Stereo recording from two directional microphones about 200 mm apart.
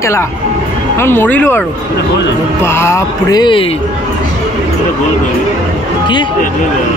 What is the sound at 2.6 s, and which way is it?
Speech, 10° left (ahead or behind).